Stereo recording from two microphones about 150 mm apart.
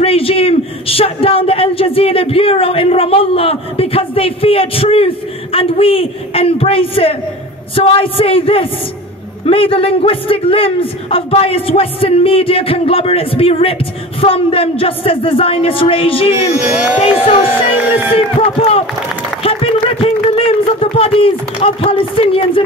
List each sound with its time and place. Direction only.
0.0 s a man's voice: 40° left (ahead or behind)
19.4 s a sound: 40° left (ahead or behind)
21.6 s a man's voice: 35° left (ahead or behind)